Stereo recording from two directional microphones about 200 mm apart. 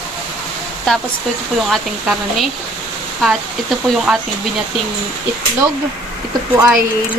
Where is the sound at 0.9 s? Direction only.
5° left (ahead or behind).